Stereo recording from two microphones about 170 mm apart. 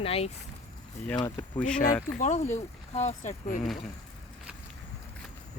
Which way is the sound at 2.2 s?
45° left (ahead or behind).